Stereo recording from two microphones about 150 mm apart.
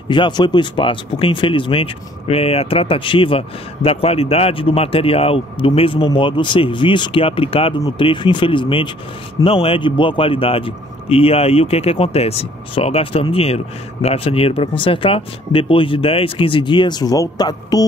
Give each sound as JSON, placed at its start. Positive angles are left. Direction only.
{"t": 0.1, "sound": "speech", "side_deg": 30}